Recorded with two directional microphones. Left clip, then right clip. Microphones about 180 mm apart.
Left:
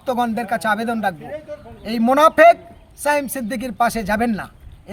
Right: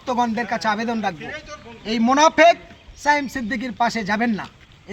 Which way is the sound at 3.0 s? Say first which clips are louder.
Even; 35° left (ahead or behind).